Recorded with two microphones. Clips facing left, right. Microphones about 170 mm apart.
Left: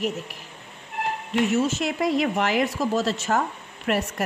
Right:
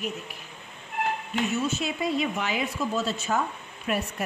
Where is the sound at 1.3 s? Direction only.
90° left.